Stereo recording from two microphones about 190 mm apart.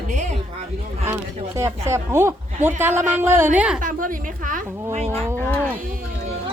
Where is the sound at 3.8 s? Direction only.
45° right (ahead or behind).